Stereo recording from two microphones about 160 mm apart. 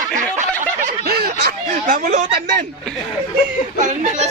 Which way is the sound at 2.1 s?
60° right (ahead or behind).